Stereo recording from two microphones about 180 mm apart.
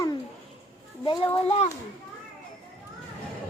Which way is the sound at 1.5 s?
35° left (ahead or behind).